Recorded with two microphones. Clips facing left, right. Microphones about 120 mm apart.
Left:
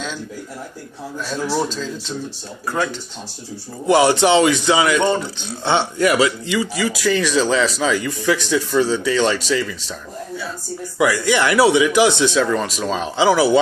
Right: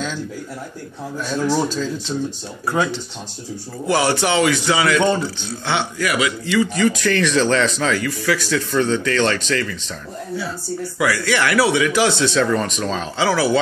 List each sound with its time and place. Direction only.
1.4 s speech: centre (ahead or behind)
3.8 s speech: 20° left (ahead or behind)
6.5 s speech: 10° left (ahead or behind)
8.0 s speech: 20° left (ahead or behind)
11.0 s speech: 20° left (ahead or behind)
12.4 s speech: 5° left (ahead or behind)
13.0 s speech: 20° left (ahead or behind)